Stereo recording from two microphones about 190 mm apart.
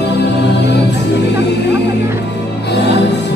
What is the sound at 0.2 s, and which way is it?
Music, 65° left (ahead or behind).